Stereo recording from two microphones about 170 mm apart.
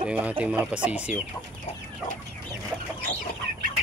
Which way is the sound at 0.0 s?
10° right (ahead or behind).